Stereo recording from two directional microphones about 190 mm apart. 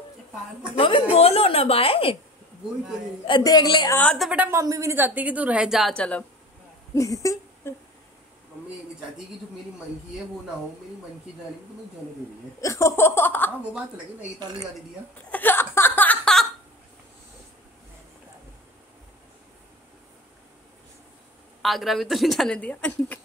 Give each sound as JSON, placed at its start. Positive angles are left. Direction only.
{"t": 0.7, "sound": "a woman's voice", "side_deg": 25}
{"t": 3.3, "sound": "a woman's voice", "side_deg": 25}
{"t": 4.0, "sound": "speech", "side_deg": 5}
{"t": 4.3, "sound": "a woman's voice", "side_deg": -10}
{"t": 7.0, "sound": "speech", "side_deg": 15}
{"t": 12.5, "sound": "speech", "side_deg": 15}
{"t": 14.4, "sound": "speech", "side_deg": -20}
{"t": 15.3, "sound": "a sound", "side_deg": 10}
{"t": 21.6, "sound": "a woman's voice", "side_deg": 0}